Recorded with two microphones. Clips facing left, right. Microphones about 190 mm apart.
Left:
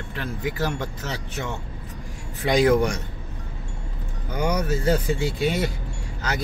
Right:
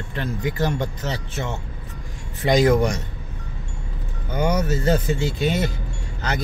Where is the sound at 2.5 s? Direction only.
10° left (ahead or behind).